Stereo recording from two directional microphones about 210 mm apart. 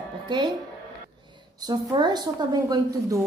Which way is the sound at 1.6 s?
20° right (ahead or behind).